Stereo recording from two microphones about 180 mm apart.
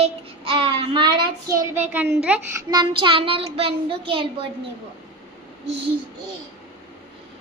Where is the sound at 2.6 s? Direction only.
25° right (ahead or behind).